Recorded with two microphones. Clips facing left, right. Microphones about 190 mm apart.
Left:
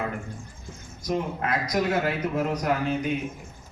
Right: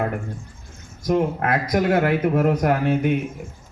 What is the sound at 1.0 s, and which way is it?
A man's voice, 55° right (ahead or behind).